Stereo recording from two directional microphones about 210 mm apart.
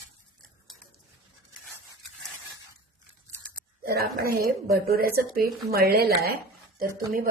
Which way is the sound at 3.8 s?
45° right (ahead or behind).